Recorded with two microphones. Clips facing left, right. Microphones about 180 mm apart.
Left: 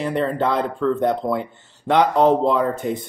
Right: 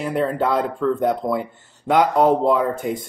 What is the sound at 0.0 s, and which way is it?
Speech, 5° right (ahead or behind).